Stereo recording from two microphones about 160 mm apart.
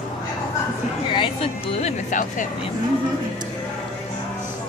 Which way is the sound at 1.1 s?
35° left (ahead or behind).